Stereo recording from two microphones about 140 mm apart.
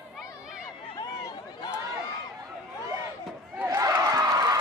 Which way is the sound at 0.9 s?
25° left (ahead or behind).